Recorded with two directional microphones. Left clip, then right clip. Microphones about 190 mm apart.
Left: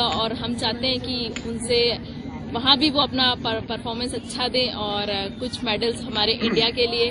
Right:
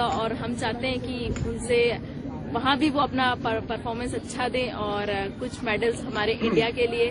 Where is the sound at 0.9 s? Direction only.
35° right (ahead or behind).